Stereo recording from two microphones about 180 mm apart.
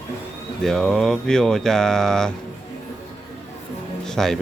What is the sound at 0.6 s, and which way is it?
Speech, centre (ahead or behind).